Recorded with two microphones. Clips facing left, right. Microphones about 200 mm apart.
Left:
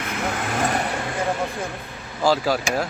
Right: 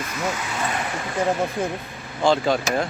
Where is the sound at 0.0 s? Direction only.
60° left (ahead or behind).